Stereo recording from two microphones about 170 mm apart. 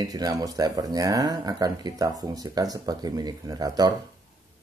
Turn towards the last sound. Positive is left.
turn(degrees=-20)  # may be behind; listen again after turning